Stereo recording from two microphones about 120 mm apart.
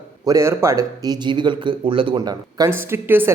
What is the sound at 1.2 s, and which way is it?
Speech, 40° right (ahead or behind).